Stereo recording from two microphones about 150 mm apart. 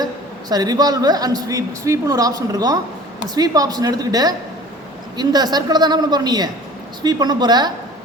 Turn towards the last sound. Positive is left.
turn(degrees=-30)  # may be behind; listen again after turning